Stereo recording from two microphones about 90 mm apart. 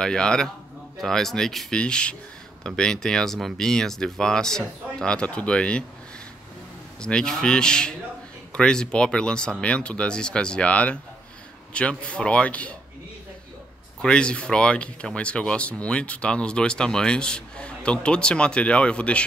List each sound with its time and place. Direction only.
0.0 s speech: 10° left (ahead or behind)
7.0 s speech: 10° left (ahead or behind)
14.0 s speech: 10° left (ahead or behind)